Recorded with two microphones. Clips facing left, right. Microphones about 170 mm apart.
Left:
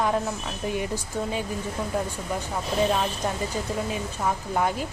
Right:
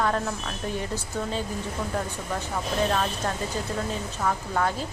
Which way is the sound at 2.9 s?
10° left (ahead or behind).